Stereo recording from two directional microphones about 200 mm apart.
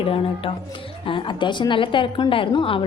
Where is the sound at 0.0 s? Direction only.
25° left (ahead or behind).